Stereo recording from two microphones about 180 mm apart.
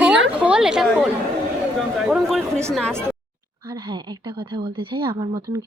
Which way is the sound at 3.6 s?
25° right (ahead or behind).